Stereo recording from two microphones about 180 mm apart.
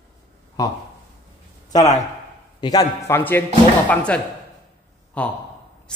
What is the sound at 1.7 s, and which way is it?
A man's voice, 20° left (ahead or behind).